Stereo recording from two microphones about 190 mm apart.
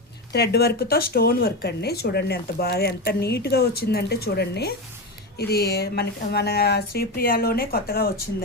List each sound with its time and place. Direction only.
0.3 s speech: 60° left (ahead or behind)